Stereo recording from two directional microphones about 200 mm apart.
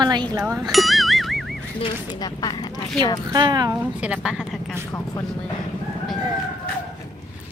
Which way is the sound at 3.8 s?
5° right (ahead or behind).